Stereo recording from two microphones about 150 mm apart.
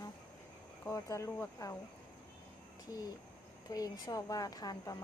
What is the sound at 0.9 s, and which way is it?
Speech, 20° left (ahead or behind).